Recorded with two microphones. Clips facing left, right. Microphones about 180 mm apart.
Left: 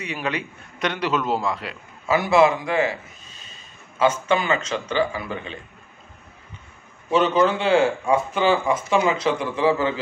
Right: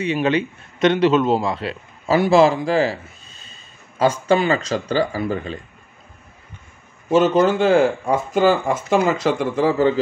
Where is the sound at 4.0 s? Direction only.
35° right (ahead or behind).